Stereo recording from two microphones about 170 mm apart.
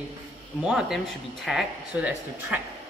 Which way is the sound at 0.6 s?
5° right (ahead or behind).